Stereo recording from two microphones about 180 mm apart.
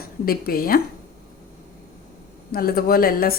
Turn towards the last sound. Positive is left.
turn(degrees=55)  # may be behind; listen again after turning